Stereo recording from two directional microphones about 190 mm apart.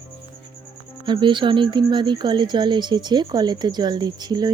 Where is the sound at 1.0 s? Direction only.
25° right (ahead or behind).